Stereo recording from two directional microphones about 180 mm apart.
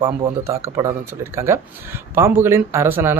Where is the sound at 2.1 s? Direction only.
15° right (ahead or behind).